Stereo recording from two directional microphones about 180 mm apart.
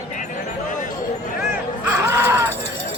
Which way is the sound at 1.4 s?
10° right (ahead or behind).